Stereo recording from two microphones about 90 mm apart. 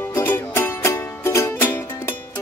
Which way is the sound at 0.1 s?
25° left (ahead or behind).